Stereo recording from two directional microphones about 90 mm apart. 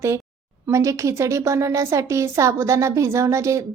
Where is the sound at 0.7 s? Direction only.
35° right (ahead or behind).